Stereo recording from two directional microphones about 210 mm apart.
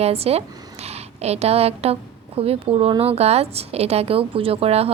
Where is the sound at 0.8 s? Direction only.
30° right (ahead or behind).